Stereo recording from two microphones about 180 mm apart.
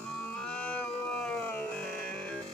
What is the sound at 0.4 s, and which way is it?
Music, 5° left (ahead or behind).